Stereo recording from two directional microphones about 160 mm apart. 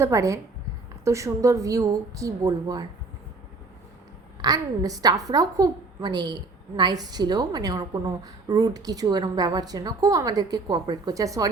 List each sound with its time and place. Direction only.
0.0 s a woman's voice: 20° right (ahead or behind)
4.4 s a woman's voice: 25° right (ahead or behind)